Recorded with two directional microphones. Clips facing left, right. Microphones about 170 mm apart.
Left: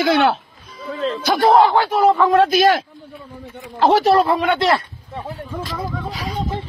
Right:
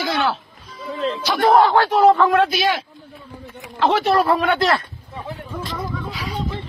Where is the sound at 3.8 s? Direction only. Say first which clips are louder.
Left 4 dB; 40° left (ahead or behind).